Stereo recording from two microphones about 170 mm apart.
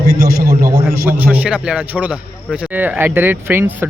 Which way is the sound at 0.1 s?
60° right (ahead or behind).